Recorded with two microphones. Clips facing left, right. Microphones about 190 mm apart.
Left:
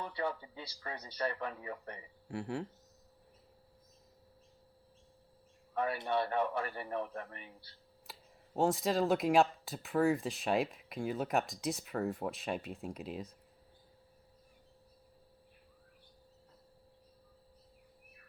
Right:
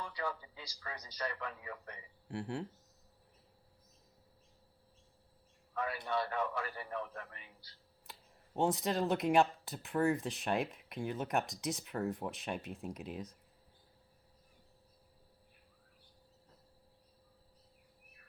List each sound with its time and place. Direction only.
0.0 s a sound: 30° left (ahead or behind)
0.8 s speech: 30° left (ahead or behind)
2.2 s speech: centre (ahead or behind)
5.7 s a man's voice: 30° left (ahead or behind)
8.5 s speech: centre (ahead or behind)